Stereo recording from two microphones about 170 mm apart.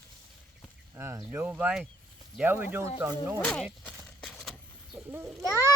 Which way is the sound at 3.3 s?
10° left (ahead or behind).